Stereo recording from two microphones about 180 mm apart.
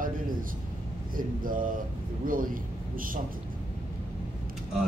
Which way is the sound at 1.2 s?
50° right (ahead or behind).